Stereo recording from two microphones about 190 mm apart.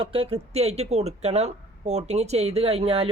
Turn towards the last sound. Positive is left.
turn(degrees=-30)  # may be behind; listen again after turning